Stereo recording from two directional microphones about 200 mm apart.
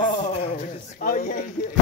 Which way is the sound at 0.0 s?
40° left (ahead or behind).